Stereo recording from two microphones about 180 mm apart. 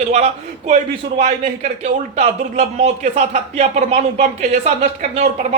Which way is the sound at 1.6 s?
40° right (ahead or behind).